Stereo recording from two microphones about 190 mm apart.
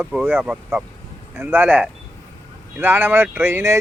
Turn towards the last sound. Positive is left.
turn(degrees=-15)  # may be behind; listen again after turning